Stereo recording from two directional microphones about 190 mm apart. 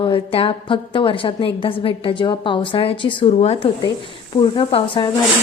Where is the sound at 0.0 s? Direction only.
30° left (ahead or behind).